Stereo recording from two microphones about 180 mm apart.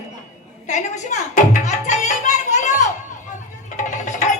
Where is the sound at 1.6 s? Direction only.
40° left (ahead or behind).